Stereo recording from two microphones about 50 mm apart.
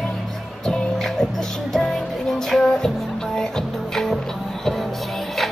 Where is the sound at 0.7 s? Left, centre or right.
Centre.